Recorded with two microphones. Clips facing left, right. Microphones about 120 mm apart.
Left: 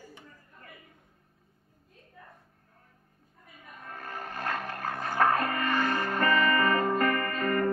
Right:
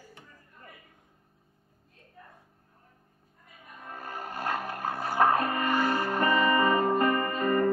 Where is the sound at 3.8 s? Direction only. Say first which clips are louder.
Right 1 dB; 15° right (ahead or behind).